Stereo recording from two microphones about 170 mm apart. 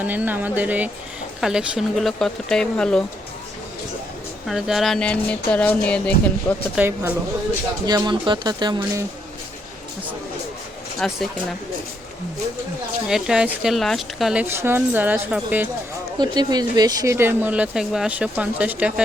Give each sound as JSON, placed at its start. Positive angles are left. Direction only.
{"t": 0.0, "sound": "speech", "side_deg": -10}
{"t": 4.4, "sound": "speech", "side_deg": -5}
{"t": 6.7, "sound": "speech", "side_deg": -10}
{"t": 7.9, "sound": "speech", "side_deg": -25}
{"t": 11.0, "sound": "speech", "side_deg": 5}
{"t": 13.1, "sound": "speech", "side_deg": -5}
{"t": 14.4, "sound": "speech", "side_deg": -15}
{"t": 16.1, "sound": "speech", "side_deg": -25}